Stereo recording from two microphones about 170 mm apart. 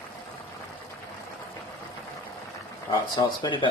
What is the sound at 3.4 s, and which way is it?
Speech, 30° left (ahead or behind).